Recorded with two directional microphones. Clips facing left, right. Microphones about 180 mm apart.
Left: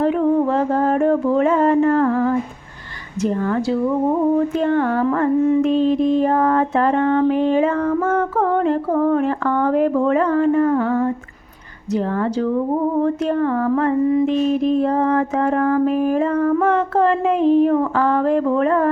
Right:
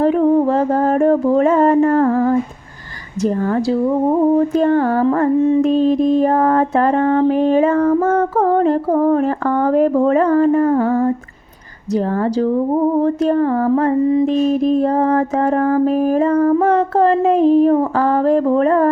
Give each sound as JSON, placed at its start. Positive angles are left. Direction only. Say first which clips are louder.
{"t": 0.0, "sound": "mantra", "louder": "right 3 dB", "side_deg": -35}